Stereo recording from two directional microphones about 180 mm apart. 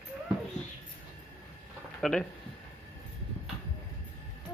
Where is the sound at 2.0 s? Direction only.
5° left (ahead or behind).